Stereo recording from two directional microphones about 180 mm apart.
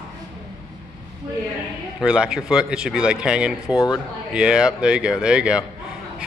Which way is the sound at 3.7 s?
20° left (ahead or behind).